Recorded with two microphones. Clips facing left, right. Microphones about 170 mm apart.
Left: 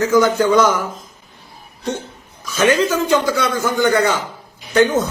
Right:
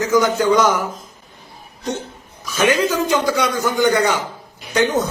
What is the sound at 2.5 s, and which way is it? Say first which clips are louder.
A man's voice: left 2 dB; 15° right (ahead or behind).